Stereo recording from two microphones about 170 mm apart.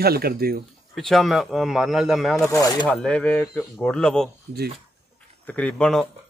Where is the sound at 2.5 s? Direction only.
20° left (ahead or behind).